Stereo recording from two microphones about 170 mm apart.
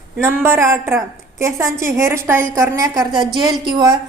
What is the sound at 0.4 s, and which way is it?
A woman's voice, 15° right (ahead or behind).